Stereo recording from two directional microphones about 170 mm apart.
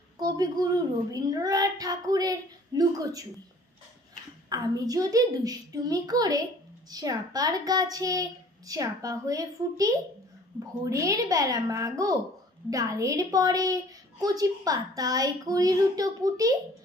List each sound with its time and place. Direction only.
0.2 s a child's voice: 20° right (ahead or behind)
4.5 s a child's voice: 20° right (ahead or behind)